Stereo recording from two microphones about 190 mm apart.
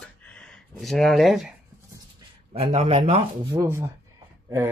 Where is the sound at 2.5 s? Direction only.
35° right (ahead or behind).